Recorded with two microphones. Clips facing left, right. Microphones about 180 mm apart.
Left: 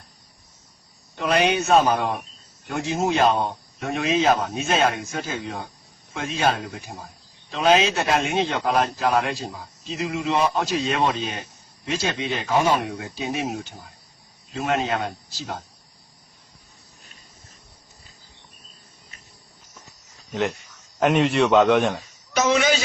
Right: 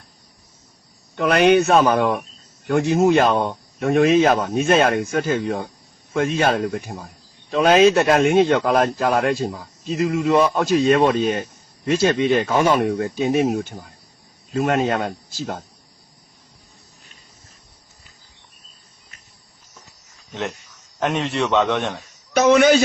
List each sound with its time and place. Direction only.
1.1 s speech: 60° right (ahead or behind)
21.0 s a man's voice: centre (ahead or behind)
22.4 s speech: 55° right (ahead or behind)